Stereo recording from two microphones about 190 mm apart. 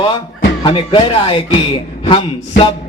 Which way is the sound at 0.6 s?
25° left (ahead or behind).